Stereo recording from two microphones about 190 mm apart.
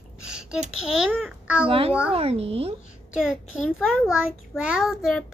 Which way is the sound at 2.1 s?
30° right (ahead or behind).